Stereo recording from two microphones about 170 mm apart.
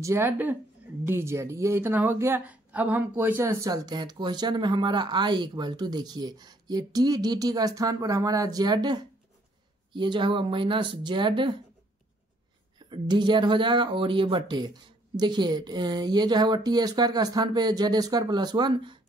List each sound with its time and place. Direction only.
0.0 s speech: 15° right (ahead or behind)
12.7 s speech: 25° right (ahead or behind)